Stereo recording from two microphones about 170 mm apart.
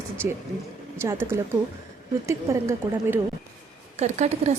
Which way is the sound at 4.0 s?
40° right (ahead or behind).